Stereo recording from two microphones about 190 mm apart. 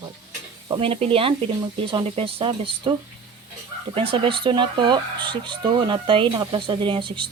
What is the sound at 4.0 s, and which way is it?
Speech, 25° right (ahead or behind).